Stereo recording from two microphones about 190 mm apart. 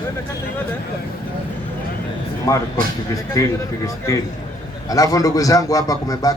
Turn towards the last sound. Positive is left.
turn(degrees=20)  # may be behind; listen again after turning